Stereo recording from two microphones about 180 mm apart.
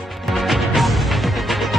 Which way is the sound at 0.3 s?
Centre (ahead or behind).